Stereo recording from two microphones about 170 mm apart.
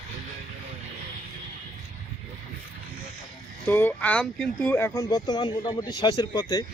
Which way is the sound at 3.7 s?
10° left (ahead or behind).